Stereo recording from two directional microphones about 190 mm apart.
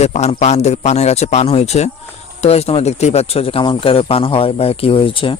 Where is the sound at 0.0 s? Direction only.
35° left (ahead or behind).